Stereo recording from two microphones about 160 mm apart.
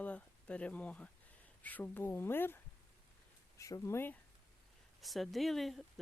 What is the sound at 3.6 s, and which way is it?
Speech, 20° left (ahead or behind).